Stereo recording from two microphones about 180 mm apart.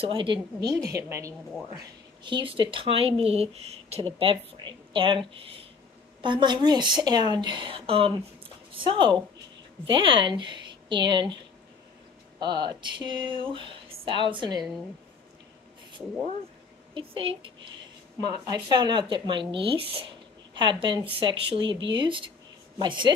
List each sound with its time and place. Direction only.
0.0 s a woman's voice: 30° right (ahead or behind)
2.2 s a woman's voice: 25° right (ahead or behind)
12.4 s speech: 25° right (ahead or behind)
16.9 s speech: 30° right (ahead or behind)